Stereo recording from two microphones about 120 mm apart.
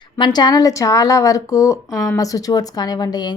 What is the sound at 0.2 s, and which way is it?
Speech, 35° left (ahead or behind).